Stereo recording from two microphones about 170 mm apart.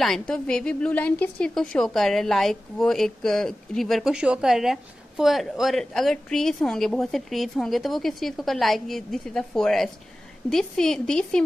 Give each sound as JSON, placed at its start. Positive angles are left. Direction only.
{"t": 0.0, "sound": "a woman's voice", "side_deg": 5}